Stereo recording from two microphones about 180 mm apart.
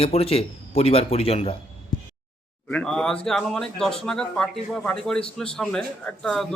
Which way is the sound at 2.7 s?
5° left (ahead or behind).